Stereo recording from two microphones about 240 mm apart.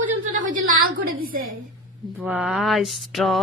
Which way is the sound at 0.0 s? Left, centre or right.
Right.